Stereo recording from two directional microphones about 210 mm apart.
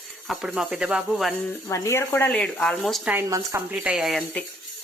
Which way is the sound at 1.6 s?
15° left (ahead or behind).